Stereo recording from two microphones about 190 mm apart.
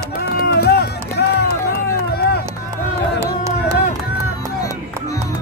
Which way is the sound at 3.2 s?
15° right (ahead or behind).